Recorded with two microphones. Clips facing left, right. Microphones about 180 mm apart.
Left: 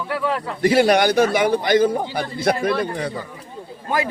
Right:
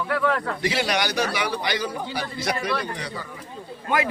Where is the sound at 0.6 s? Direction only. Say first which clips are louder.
Left 13 dB; 50° left (ahead or behind).